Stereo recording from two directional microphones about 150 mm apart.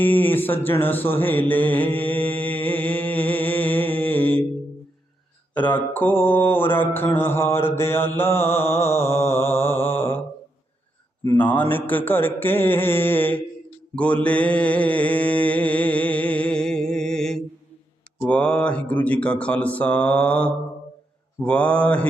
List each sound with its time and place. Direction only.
0.0 s mantra: 10° left (ahead or behind)
5.5 s mantra: 10° left (ahead or behind)
11.2 s mantra: 15° left (ahead or behind)